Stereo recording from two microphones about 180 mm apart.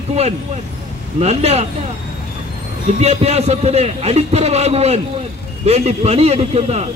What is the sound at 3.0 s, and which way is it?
Speech, 35° right (ahead or behind).